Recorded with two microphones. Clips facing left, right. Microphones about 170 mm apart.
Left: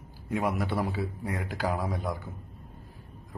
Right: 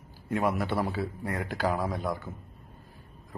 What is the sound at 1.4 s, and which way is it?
Speech, 5° left (ahead or behind).